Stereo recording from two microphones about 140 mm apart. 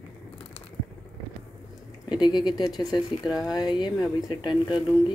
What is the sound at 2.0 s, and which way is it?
Speech, 30° left (ahead or behind).